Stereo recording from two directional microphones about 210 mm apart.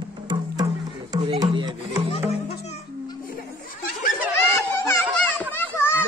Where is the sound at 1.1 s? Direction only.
20° right (ahead or behind).